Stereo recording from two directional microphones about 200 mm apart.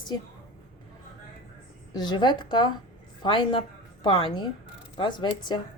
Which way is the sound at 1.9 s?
20° left (ahead or behind).